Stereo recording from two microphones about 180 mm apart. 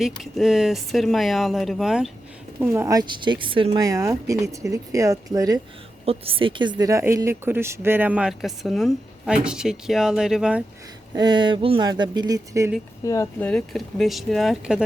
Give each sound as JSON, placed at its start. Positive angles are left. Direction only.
{"t": 0.0, "sound": "speech", "side_deg": 0}
{"t": 3.8, "sound": "a woman's voice", "side_deg": -15}
{"t": 6.1, "sound": "a woman's voice", "side_deg": -30}
{"t": 11.1, "sound": "speech", "side_deg": -25}
{"t": 13.0, "sound": "speech", "side_deg": 15}
{"t": 13.4, "sound": "speech", "side_deg": 5}